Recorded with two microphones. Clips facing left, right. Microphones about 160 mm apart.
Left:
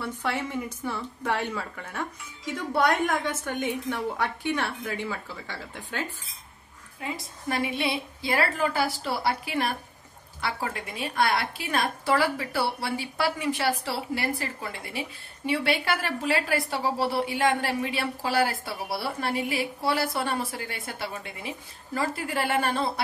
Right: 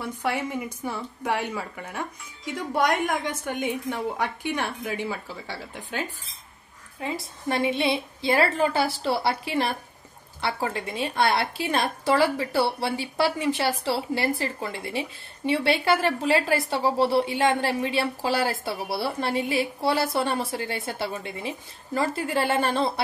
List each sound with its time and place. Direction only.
0.0 s a woman's voice: 10° right (ahead or behind)
7.0 s a woman's voice: 25° right (ahead or behind)